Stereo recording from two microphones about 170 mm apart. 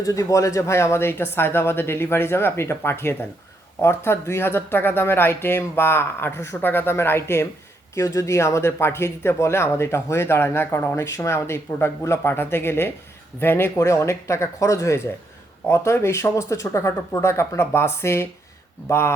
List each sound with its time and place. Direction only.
0.0 s speech: 20° left (ahead or behind)